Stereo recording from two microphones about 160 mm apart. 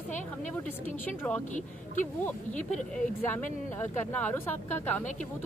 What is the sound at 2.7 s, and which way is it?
Speech, 10° left (ahead or behind).